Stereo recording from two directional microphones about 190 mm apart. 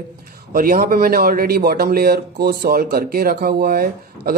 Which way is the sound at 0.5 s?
50° right (ahead or behind).